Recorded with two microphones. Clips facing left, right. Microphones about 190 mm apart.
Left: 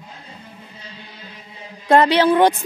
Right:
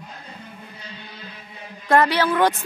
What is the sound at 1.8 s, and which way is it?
Speech, 20° left (ahead or behind).